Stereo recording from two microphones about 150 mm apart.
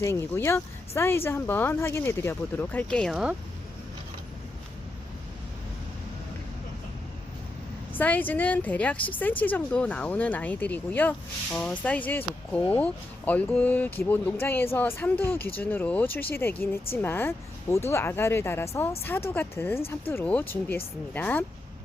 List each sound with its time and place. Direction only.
0.0 s speech: 20° left (ahead or behind); by 3.3 s centre (ahead or behind)
7.9 s speech: 10° left (ahead or behind)